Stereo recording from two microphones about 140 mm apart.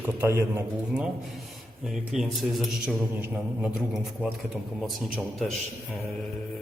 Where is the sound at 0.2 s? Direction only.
20° right (ahead or behind).